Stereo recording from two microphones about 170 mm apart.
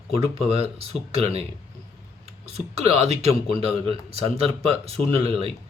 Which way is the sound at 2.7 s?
40° right (ahead or behind).